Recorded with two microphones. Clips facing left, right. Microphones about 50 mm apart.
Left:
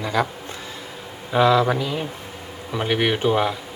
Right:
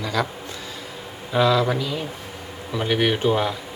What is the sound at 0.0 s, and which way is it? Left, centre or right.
Speech, left.